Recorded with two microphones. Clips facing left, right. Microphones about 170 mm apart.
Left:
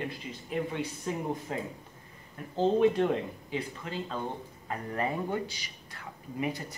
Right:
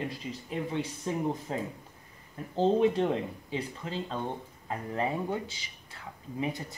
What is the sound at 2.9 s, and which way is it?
Speech, 25° right (ahead or behind).